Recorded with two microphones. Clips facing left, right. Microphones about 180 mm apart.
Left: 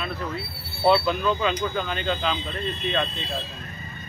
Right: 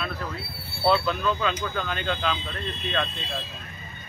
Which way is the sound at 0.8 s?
5° left (ahead or behind).